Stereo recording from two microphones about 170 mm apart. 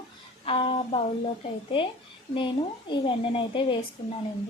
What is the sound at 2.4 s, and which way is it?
A woman's voice, 30° left (ahead or behind).